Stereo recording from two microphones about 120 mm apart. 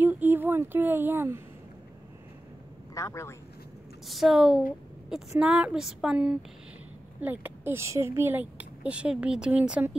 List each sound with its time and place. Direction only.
0.0 s a sound: 15° right (ahead or behind)
2.9 s a man's voice: 25° left (ahead or behind)
4.1 s speech: 5° right (ahead or behind)